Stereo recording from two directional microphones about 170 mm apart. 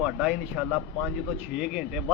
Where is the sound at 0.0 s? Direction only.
5° right (ahead or behind).